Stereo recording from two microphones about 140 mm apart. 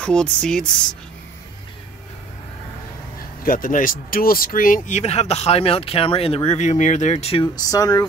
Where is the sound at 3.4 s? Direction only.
80° left; by 7.4 s 50° left (ahead or behind).